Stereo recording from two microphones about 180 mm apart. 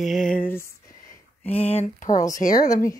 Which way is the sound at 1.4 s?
35° left (ahead or behind).